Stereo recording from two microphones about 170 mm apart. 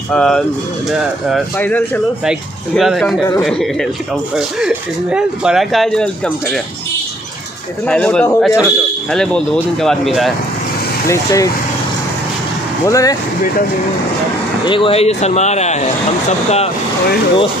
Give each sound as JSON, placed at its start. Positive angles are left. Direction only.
{"t": 0.1, "sound": "speech", "side_deg": 5}
{"t": 7.8, "sound": "speech", "side_deg": 5}
{"t": 11.1, "sound": "speech", "side_deg": 20}
{"t": 12.8, "sound": "speech", "side_deg": 20}
{"t": 14.6, "sound": "speech", "side_deg": 30}